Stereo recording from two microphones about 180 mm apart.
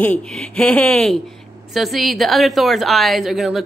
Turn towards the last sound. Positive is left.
turn(degrees=0)  # may be behind; listen again after turning